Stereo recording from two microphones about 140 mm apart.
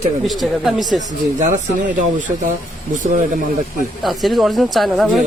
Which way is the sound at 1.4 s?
55° right (ahead or behind).